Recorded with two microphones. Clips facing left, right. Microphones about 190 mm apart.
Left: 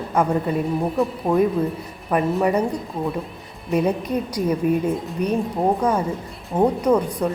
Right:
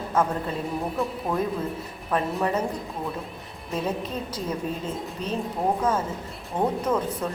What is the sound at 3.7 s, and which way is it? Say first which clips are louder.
A woman's voice: left 8 dB; 15° left (ahead or behind).